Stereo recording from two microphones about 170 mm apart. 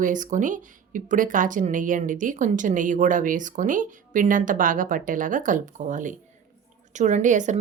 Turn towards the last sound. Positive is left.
turn(degrees=-45)  # may be behind; listen again after turning